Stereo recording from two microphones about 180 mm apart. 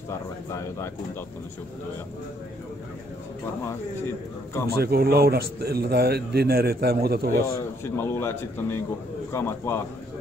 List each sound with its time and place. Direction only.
0.1 s a man's voice: 15° left (ahead or behind)
4.7 s speech: 60° right (ahead or behind)
7.4 s a man's voice: 15° left (ahead or behind)